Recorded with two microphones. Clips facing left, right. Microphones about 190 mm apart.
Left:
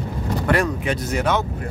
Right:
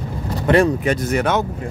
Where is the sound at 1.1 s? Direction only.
55° right (ahead or behind).